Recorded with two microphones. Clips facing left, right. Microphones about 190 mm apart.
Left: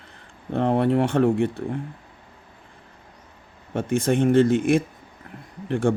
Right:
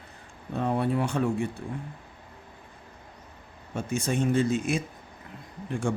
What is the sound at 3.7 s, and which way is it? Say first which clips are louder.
Speech: left 7 dB; 55° left (ahead or behind).